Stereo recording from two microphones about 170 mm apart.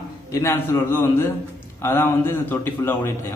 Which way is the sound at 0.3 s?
15° left (ahead or behind).